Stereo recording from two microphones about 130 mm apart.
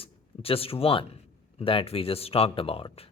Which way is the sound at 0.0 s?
45° left (ahead or behind).